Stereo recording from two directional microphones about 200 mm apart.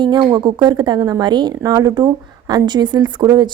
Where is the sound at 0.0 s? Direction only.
25° right (ahead or behind).